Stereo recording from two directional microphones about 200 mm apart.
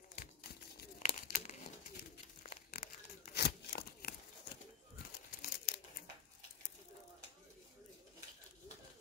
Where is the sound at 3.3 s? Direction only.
50° left (ahead or behind).